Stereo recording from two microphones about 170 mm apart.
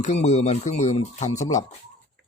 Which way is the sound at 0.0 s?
45° left (ahead or behind).